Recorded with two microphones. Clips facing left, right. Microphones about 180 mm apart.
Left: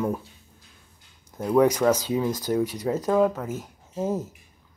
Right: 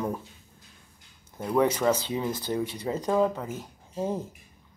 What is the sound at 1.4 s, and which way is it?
Speech, 10° left (ahead or behind).